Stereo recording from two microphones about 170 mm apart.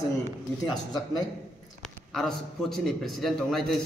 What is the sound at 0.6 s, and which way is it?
Speech, 25° left (ahead or behind).